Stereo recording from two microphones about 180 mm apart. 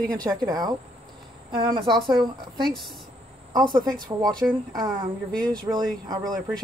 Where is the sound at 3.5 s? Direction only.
25° right (ahead or behind).